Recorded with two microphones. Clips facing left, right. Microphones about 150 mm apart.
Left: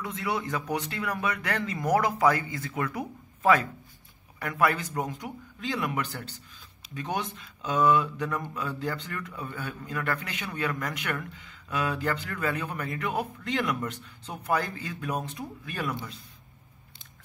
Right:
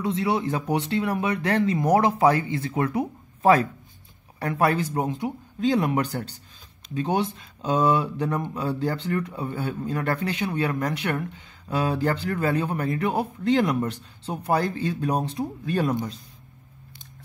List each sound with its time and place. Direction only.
0.0 s speech: 30° right (ahead or behind)